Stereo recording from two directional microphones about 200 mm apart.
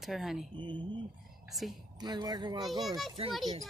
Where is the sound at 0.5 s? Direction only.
25° right (ahead or behind).